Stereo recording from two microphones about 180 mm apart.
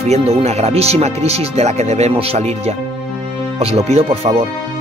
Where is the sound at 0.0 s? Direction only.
35° right (ahead or behind).